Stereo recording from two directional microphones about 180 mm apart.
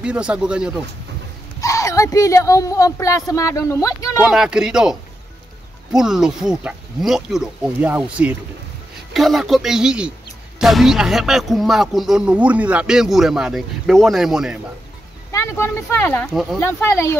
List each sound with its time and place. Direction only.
0.0 s speech: 5° right (ahead or behind)
1.6 s speech: 20° left (ahead or behind)
4.2 s speech: 5° right (ahead or behind)
5.9 s speech: 5° right (ahead or behind)
15.3 s speech: 15° left (ahead or behind)